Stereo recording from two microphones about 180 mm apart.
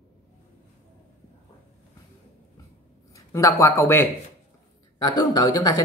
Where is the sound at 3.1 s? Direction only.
15° left (ahead or behind).